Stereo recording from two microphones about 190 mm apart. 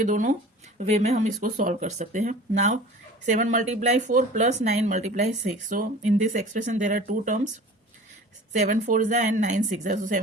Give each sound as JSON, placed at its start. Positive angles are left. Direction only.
{"t": 0.0, "sound": "speech", "side_deg": -40}
{"t": 8.7, "sound": "speech", "side_deg": -45}